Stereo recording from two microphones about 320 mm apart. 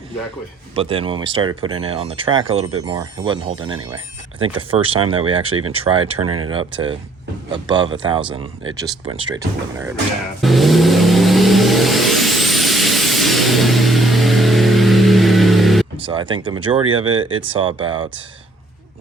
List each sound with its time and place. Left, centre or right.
0.8 s speech: centre
6.2 s speech: right
6.5 s speech: centre
10.4 s vehicle: centre
16.0 s speech: centre